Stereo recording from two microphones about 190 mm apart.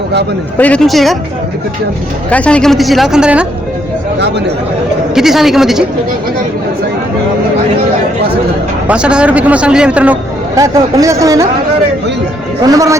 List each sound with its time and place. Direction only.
0.6 s a woman's voice: 5° left (ahead or behind)
2.3 s a woman's voice: 5° left (ahead or behind)
5.1 s a woman's voice: centre (ahead or behind)
8.9 s a man's voice: 5° right (ahead or behind)
10.5 s a man's voice: 15° right (ahead or behind)
12.6 s a man's voice: 20° right (ahead or behind)